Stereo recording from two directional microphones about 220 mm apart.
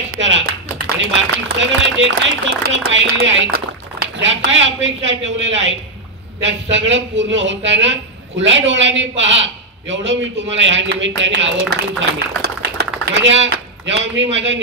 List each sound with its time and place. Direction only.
0.1 s clapping: 55° right (ahead or behind)
1.5 s a woman's voice: 55° right (ahead or behind)
12.4 s a sound: 50° right (ahead or behind)